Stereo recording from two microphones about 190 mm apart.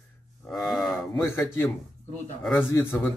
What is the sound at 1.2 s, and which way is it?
Speech, 15° left (ahead or behind).